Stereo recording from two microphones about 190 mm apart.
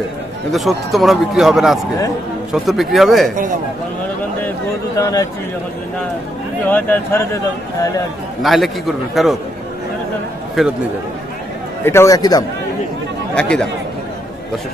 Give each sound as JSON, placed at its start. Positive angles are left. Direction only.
{"t": 0.5, "sound": "speech", "side_deg": 0}
{"t": 4.9, "sound": "speech", "side_deg": 15}
{"t": 6.7, "sound": "speech", "side_deg": 10}
{"t": 8.4, "sound": "speech", "side_deg": 0}
{"t": 10.6, "sound": "speech", "side_deg": 0}
{"t": 11.8, "sound": "speech", "side_deg": 15}
{"t": 13.3, "sound": "speech", "side_deg": 5}